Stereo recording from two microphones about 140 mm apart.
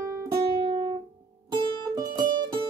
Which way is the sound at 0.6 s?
40° right (ahead or behind).